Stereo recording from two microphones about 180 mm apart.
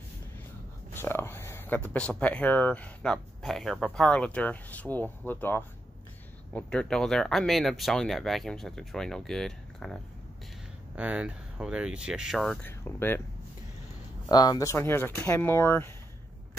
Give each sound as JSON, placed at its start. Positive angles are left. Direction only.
{"t": 0.9, "sound": "speech", "side_deg": 10}
{"t": 11.0, "sound": "speech", "side_deg": -5}
{"t": 12.6, "sound": "speech", "side_deg": 10}
{"t": 14.3, "sound": "speech", "side_deg": 20}